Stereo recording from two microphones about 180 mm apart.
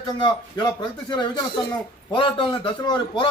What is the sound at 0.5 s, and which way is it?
A man's voice, 25° left (ahead or behind).